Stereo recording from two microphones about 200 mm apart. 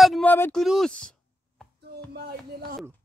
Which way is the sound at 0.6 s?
Centre (ahead or behind).